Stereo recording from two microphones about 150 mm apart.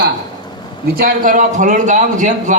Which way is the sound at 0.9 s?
75° right (ahead or behind).